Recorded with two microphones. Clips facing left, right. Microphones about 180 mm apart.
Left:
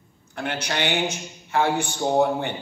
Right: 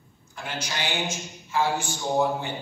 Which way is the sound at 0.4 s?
65° left (ahead or behind).